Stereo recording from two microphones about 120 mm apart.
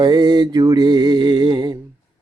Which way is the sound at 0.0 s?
35° right (ahead or behind).